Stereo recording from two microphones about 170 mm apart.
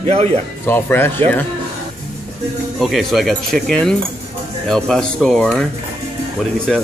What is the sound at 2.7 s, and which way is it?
Speech, centre (ahead or behind).